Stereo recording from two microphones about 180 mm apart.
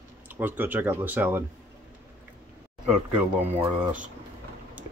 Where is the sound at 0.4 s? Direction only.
10° right (ahead or behind).